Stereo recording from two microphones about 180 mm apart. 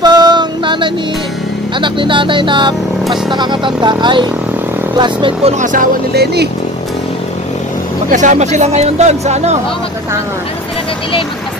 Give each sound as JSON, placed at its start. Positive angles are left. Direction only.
{"t": 0.0, "sound": "music", "side_deg": -25}
{"t": 1.8, "sound": "speech", "side_deg": -25}
{"t": 8.1, "sound": "speech", "side_deg": -45}